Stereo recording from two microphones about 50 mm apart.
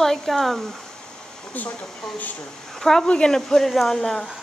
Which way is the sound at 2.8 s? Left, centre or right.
Centre.